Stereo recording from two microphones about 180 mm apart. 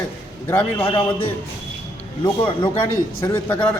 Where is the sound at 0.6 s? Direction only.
25° left (ahead or behind).